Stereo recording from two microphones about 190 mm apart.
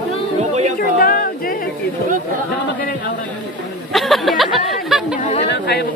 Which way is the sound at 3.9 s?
Centre (ahead or behind).